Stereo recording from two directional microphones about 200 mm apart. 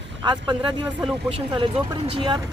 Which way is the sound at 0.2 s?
25° right (ahead or behind).